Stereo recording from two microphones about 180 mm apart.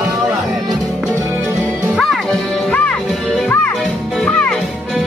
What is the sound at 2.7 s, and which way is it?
Music, 5° left (ahead or behind).